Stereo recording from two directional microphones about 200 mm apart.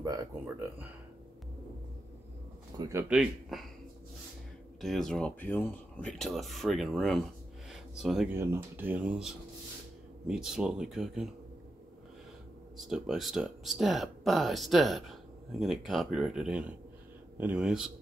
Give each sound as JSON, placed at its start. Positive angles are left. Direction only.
{"t": 0.0, "sound": "speech", "side_deg": -20}
{"t": 2.8, "sound": "speech", "side_deg": -15}
{"t": 3.1, "sound": "speech", "side_deg": 0}
{"t": 4.8, "sound": "speech", "side_deg": 0}
{"t": 7.7, "sound": "a sound", "side_deg": 0}
{"t": 8.4, "sound": "speech", "side_deg": -10}
{"t": 12.7, "sound": "speech", "side_deg": 0}